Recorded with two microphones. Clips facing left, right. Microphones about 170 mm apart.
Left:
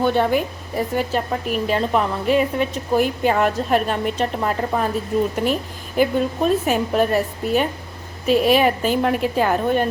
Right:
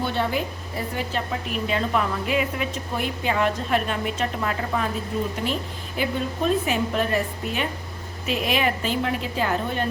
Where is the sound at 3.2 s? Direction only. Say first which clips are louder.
Left 5 dB; 45° left (ahead or behind).